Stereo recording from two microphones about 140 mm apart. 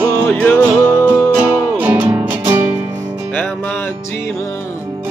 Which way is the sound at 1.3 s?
15° right (ahead or behind).